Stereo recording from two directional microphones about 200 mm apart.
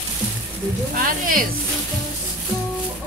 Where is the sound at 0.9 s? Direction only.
45° right (ahead or behind).